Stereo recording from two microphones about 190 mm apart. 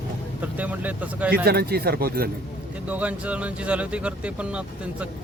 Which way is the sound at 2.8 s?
5° right (ahead or behind).